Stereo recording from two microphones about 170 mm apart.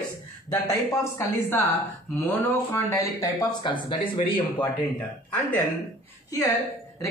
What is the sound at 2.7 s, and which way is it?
Speech, 15° left (ahead or behind).